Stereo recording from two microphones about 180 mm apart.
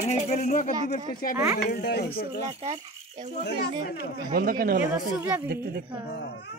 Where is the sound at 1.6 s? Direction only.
65° left (ahead or behind).